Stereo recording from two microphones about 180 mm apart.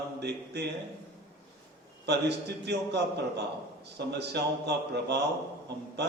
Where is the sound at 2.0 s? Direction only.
70° right (ahead or behind).